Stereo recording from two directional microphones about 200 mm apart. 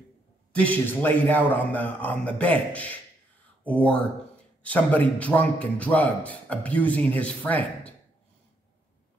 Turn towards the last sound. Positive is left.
turn(degrees=10)  # may be behind; listen again after turning